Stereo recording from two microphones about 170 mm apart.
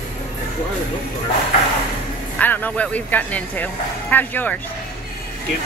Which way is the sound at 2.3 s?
10° left (ahead or behind).